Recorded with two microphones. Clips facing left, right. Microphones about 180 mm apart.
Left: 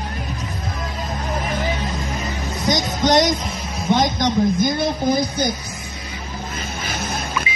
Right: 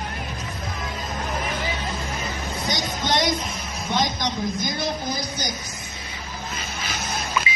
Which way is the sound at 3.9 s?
50° left (ahead or behind).